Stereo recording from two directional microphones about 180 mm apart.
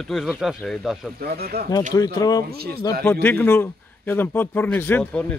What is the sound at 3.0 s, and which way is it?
A man's voice, 10° left (ahead or behind).